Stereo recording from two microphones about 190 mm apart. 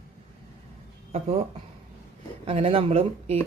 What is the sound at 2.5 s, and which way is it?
Speech, 30° right (ahead or behind).